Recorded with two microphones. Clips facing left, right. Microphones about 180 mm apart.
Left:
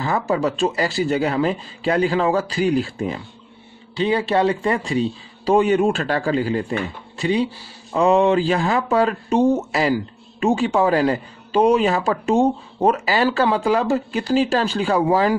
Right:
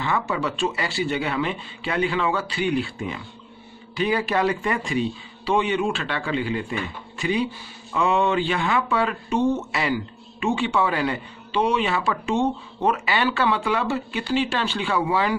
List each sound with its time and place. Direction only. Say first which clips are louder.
0.0 s speech: left 5 dB; 40° left (ahead or behind)